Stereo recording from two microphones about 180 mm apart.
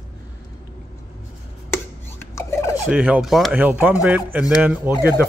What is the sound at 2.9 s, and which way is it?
Speech, 5° right (ahead or behind).